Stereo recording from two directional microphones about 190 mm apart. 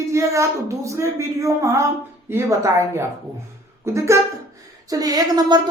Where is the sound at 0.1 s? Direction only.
15° right (ahead or behind).